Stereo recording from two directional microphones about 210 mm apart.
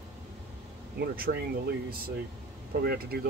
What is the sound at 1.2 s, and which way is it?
Speech, 45° right (ahead or behind).